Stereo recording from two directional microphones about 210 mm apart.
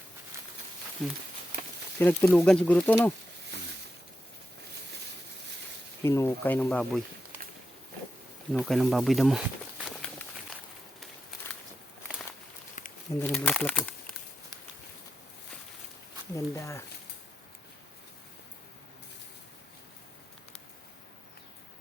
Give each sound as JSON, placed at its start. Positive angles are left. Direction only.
{"t": 1.0, "sound": "speech", "side_deg": 0}
{"t": 6.0, "sound": "speech", "side_deg": 10}
{"t": 8.5, "sound": "speech", "side_deg": 0}
{"t": 12.8, "sound": "a sound", "side_deg": 40}
{"t": 13.1, "sound": "speech", "side_deg": 10}
{"t": 16.3, "sound": "speech", "side_deg": 15}